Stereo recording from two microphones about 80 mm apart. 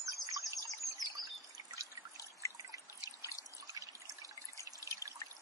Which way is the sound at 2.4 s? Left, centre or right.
Left.